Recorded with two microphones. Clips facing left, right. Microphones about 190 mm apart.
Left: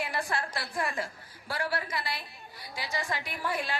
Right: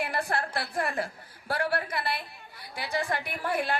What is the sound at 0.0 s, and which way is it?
A woman's voice, 55° right (ahead or behind).